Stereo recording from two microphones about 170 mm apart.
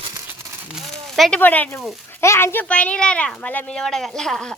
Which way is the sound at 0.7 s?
Centre (ahead or behind).